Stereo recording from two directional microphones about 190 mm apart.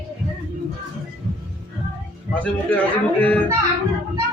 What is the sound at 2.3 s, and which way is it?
A man's voice, 5° left (ahead or behind).